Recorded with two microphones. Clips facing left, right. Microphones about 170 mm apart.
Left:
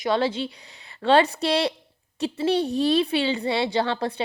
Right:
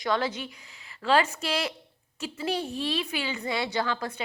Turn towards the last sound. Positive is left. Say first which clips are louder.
# left 5 dB
turn(degrees=30)  # may be behind; listen again after turning